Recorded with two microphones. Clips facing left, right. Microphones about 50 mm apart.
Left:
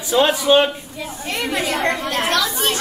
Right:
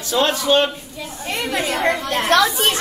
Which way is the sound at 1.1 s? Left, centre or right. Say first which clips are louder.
Even; centre.